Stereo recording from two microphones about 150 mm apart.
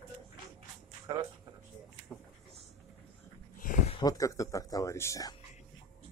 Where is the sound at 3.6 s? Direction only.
65° left (ahead or behind).